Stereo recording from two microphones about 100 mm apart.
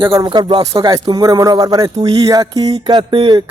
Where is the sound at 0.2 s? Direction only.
50° right (ahead or behind).